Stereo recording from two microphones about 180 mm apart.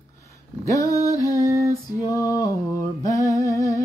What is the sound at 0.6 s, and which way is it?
Music, 20° left (ahead or behind).